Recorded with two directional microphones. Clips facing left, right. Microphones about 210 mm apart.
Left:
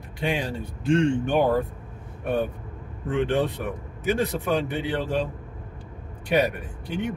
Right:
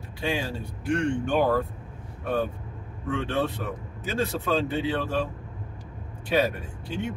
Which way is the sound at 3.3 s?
15° left (ahead or behind).